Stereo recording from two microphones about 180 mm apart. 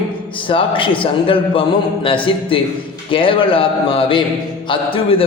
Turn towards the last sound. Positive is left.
turn(degrees=30)  # may be behind; listen again after turning